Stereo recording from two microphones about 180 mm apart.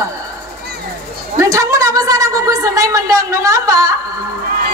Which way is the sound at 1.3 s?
20° right (ahead or behind).